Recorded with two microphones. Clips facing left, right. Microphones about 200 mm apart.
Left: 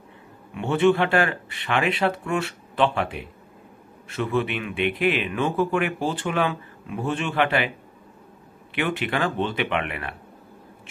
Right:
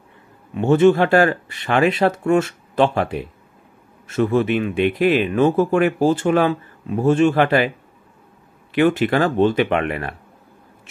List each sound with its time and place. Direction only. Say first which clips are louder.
0.6 s speech: right 6 dB; 40° right (ahead or behind)
8.7 s speech: right 9 dB; 40° right (ahead or behind)